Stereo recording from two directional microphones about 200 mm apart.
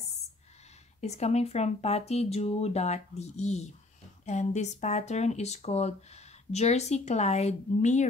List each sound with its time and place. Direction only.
1.0 s speech: 35° left (ahead or behind)